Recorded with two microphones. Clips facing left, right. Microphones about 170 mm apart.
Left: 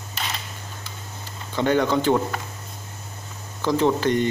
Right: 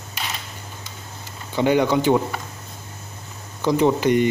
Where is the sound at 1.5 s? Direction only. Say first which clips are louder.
Right 2 dB; 10° right (ahead or behind).